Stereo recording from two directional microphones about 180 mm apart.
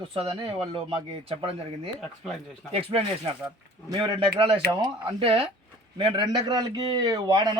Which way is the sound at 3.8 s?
25° right (ahead or behind).